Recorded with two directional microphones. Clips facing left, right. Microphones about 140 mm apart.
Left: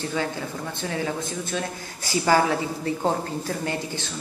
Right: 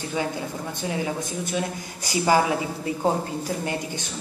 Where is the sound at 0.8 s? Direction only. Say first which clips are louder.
Even; 15° right (ahead or behind).